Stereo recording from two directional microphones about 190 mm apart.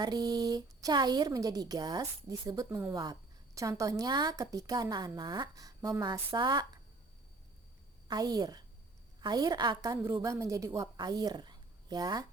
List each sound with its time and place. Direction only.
0.0 s a woman's voice: 20° right (ahead or behind)
8.0 s a woman's voice: 20° right (ahead or behind)